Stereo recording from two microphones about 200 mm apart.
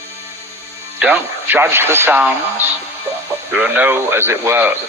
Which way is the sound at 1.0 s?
10° right (ahead or behind).